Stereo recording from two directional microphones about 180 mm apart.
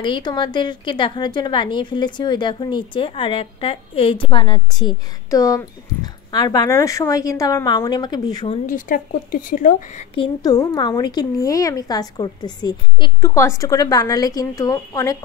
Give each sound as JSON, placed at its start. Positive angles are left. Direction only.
{"t": 0.0, "sound": "a woman's voice", "side_deg": 25}
{"t": 8.6, "sound": "speech", "side_deg": 50}
{"t": 10.1, "sound": "a woman's voice", "side_deg": 25}